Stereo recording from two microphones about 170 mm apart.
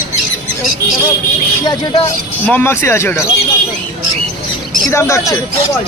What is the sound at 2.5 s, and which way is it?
Speech, 10° left (ahead or behind).